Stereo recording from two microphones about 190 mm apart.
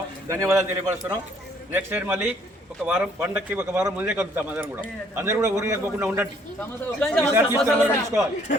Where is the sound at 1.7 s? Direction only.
10° right (ahead or behind).